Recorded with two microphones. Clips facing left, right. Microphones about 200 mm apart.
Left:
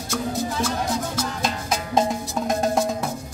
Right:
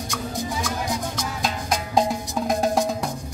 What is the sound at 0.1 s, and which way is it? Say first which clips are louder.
Music: left 5 dB; 15° right (ahead or behind).